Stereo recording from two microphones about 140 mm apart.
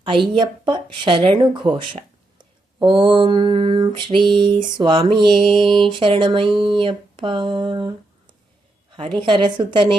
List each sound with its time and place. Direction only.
0.0 s mantra: 35° right (ahead or behind)
9.0 s mantra: 35° right (ahead or behind)